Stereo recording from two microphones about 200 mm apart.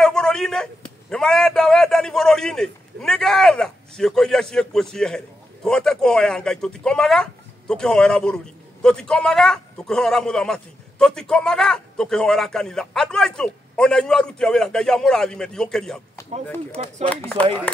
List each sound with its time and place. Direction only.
0.0 s a sound: 5° left (ahead or behind)
1.1 s a man's voice: 5° left (ahead or behind)
16.8 s speech: 30° right (ahead or behind)
17.1 s speech: 5° left (ahead or behind)